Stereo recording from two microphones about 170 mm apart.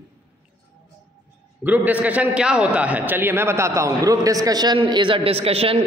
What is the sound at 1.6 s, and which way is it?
A man's voice, 10° right (ahead or behind).